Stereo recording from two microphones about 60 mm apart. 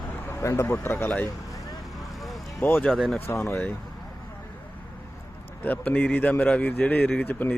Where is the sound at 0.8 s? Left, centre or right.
Left.